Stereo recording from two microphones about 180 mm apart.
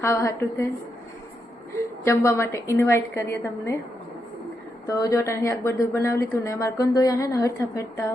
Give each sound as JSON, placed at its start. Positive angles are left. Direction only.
{"t": 0.0, "sound": "a woman's voice", "side_deg": 15}
{"t": 2.0, "sound": "a woman's voice", "side_deg": 15}
{"t": 4.9, "sound": "a woman's voice", "side_deg": 15}